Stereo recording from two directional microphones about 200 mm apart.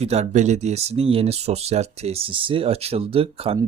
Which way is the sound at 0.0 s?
35° right (ahead or behind).